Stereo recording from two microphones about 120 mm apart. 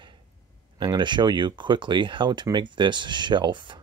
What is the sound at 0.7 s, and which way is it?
Speech, 40° right (ahead or behind).